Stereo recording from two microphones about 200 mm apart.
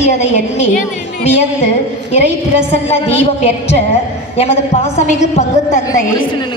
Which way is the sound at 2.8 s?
30° left (ahead or behind).